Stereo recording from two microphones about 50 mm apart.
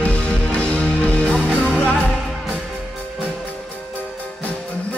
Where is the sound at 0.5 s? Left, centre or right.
Left.